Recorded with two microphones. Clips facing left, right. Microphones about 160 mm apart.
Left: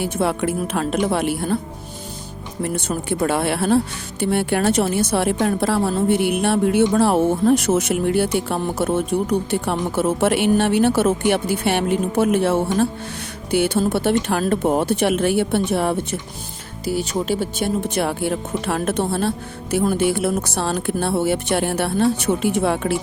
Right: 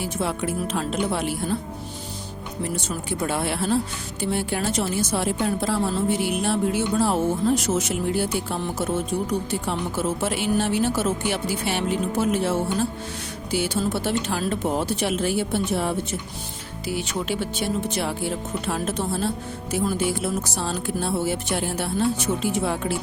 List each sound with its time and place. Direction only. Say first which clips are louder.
0.0 s speech: left 5 dB; 60° left (ahead or behind)
2.6 s speech: left 6 dB; 60° left (ahead or behind)
16.8 s speech: left 5 dB; 40° left (ahead or behind); by 23.0 s 65° left (ahead or behind)